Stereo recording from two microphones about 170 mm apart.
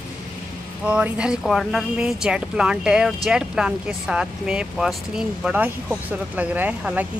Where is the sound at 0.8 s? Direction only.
5° right (ahead or behind).